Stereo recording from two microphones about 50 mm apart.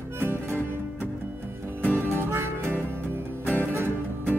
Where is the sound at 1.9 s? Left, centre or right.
Right.